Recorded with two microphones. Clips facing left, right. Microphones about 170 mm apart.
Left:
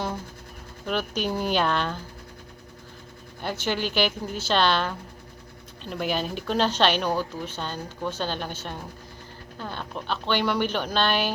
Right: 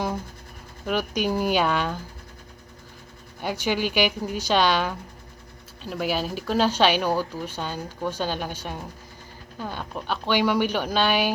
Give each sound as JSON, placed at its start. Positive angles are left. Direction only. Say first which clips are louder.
{"t": 0.9, "sound": "speech", "louder": "right 2 dB", "side_deg": -10}
{"t": 3.4, "sound": "speech", "louder": "right 2 dB", "side_deg": -10}